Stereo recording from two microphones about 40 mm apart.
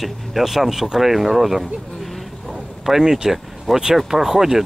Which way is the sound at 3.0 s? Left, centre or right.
Centre.